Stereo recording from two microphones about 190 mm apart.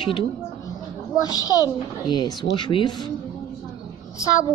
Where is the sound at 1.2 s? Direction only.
20° left (ahead or behind).